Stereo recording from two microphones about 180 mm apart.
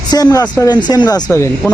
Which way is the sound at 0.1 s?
20° left (ahead or behind).